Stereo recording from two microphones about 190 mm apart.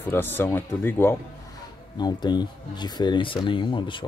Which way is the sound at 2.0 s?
20° left (ahead or behind).